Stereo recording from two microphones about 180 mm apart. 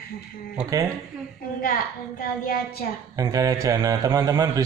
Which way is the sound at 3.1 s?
20° right (ahead or behind).